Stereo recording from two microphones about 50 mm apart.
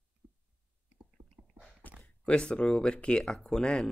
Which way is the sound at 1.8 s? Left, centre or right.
Left.